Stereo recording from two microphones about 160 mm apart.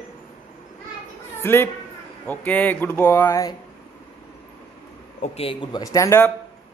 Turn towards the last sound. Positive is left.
turn(degrees=20)  # may be behind; listen again after turning